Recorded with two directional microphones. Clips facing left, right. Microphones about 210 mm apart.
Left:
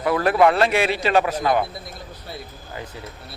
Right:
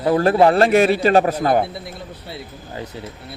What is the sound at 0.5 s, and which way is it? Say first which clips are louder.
Speech: right 6 dB; 45° right (ahead or behind).